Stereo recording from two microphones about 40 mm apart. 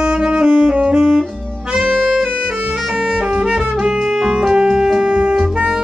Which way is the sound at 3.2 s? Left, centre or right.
Right.